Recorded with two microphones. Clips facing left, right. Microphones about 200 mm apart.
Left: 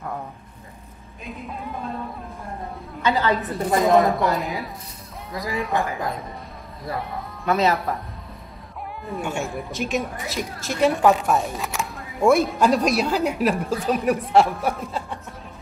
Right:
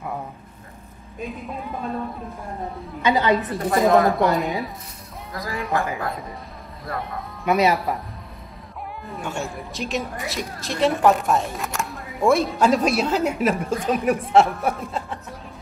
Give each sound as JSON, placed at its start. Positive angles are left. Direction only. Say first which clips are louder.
{"t": 1.2, "sound": "a woman's voice", "louder": "right 3 dB", "side_deg": 0}
{"t": 3.0, "sound": "a woman's voice", "louder": "right 2 dB", "side_deg": -20}
{"t": 3.3, "sound": "a woman's voice", "louder": "even", "side_deg": 0}
{"t": 6.9, "sound": "a woman's voice", "louder": "left 1 dB", "side_deg": 0}
{"t": 7.4, "sound": "a woman's voice", "louder": "right 1 dB", "side_deg": -15}
{"t": 9.0, "sound": "a woman's voice", "louder": "left 3 dB", "side_deg": 0}